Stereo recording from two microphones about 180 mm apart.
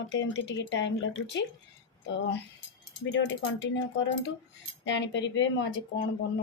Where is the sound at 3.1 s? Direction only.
85° left.